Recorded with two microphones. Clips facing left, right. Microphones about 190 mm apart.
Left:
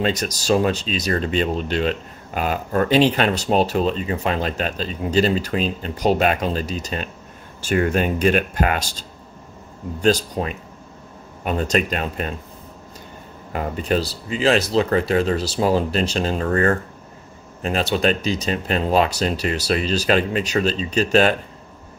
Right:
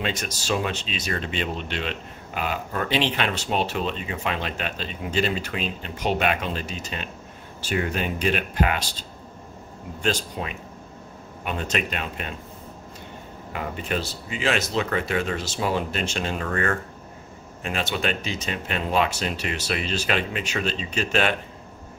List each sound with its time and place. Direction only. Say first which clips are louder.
0.0 s speech: left 7 dB; 40° left (ahead or behind)
10.0 s speech: left 8 dB; 40° left (ahead or behind)
13.5 s speech: left 7 dB; 40° left (ahead or behind)